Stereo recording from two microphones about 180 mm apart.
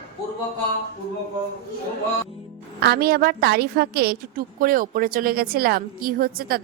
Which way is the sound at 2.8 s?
60° right (ahead or behind).